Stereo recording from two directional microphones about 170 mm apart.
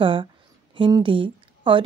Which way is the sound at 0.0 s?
30° right (ahead or behind).